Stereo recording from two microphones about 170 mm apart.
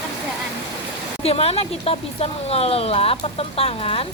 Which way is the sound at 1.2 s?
35° left (ahead or behind).